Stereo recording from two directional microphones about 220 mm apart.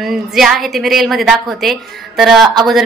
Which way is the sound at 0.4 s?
Centre (ahead or behind).